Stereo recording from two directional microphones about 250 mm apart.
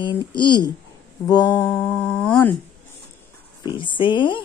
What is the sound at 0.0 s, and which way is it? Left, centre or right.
A woman's voice, centre.